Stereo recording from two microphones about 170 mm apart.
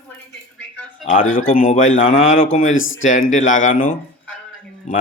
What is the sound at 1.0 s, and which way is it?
A man's voice, 40° left (ahead or behind).